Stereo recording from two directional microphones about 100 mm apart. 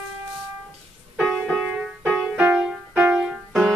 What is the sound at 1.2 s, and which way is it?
Music, centre (ahead or behind).